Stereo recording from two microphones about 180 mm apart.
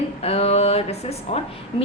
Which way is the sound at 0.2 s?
35° left (ahead or behind).